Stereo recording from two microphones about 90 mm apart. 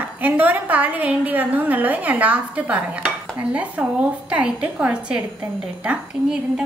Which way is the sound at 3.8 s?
10° right (ahead or behind).